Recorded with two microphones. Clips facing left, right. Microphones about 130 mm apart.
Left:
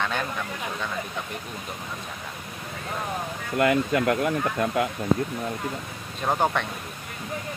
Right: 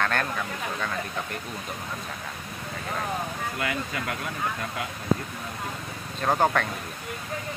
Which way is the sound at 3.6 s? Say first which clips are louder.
Left 12 dB; 65° left (ahead or behind).